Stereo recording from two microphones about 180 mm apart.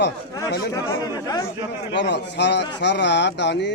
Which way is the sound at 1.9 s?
75° left (ahead or behind).